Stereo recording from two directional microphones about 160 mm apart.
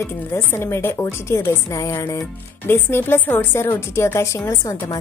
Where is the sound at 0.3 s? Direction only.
15° left (ahead or behind).